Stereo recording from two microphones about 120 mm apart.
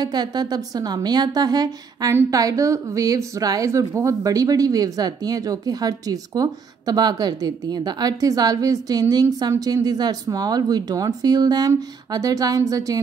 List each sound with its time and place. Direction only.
0.0 s a woman's voice: 35° right (ahead or behind)